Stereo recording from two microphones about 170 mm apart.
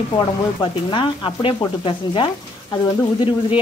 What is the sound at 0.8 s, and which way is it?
Frying, 30° left (ahead or behind).